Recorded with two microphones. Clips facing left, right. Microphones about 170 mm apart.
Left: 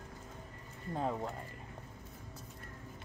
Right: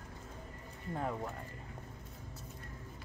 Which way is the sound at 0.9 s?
20° left (ahead or behind).